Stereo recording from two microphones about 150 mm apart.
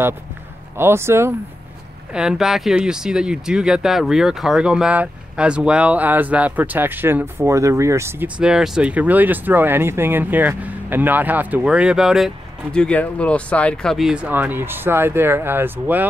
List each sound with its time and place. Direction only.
0.7 s speech: 15° right (ahead or behind)
2.1 s speech: 5° right (ahead or behind)
8.4 s speech: 5° right (ahead or behind)
12.7 s speech: 10° left (ahead or behind); by 16.1 s 15° right (ahead or behind)